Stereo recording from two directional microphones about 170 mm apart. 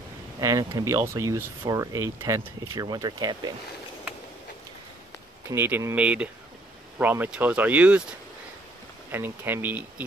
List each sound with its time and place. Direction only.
0.4 s speech: 20° right (ahead or behind)
5.5 s speech: 15° right (ahead or behind)
9.1 s speech: 15° right (ahead or behind)